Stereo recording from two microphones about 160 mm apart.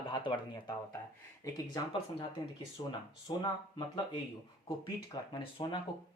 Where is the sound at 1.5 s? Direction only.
25° left (ahead or behind).